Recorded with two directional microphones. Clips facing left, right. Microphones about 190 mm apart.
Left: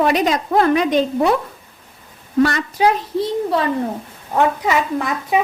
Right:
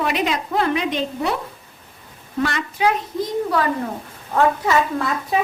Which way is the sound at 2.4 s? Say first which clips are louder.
Left 4 dB; 40° left (ahead or behind).